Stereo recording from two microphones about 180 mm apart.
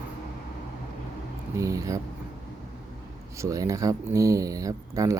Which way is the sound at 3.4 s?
20° right (ahead or behind).